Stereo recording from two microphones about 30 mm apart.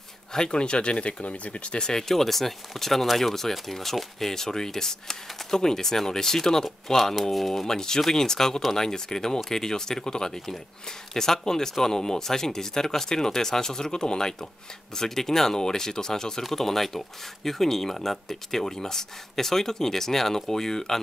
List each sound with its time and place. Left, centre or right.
0.3 s speech: left
1.2 s speech: left
1.8 s speech: left
7.6 s speech: centre
15.0 s speech: centre
16.4 s speech: centre